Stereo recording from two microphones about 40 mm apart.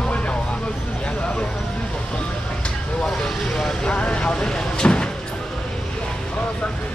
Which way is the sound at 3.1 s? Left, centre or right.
Centre.